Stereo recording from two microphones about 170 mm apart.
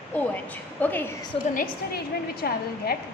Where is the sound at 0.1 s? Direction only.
10° left (ahead or behind).